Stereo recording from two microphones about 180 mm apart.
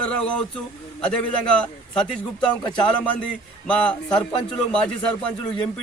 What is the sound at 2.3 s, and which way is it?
Speech, 25° left (ahead or behind).